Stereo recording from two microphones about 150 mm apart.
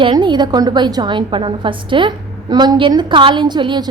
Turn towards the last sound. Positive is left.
turn(degrees=-30)  # may be behind; listen again after turning